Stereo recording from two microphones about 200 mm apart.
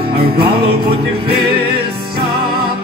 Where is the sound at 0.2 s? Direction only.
30° right (ahead or behind).